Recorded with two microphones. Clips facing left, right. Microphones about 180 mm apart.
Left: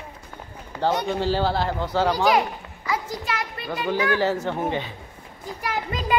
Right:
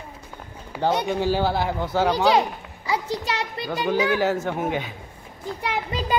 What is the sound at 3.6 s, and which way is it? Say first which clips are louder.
Speech: right 2 dB; centre (ahead or behind).